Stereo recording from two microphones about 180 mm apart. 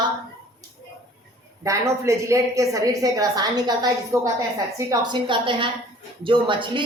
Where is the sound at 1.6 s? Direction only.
15° right (ahead or behind).